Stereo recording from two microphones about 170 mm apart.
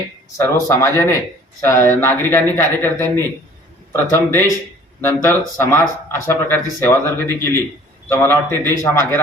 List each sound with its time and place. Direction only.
0.3 s speech: 15° left (ahead or behind)
4.1 s speech: 15° left (ahead or behind)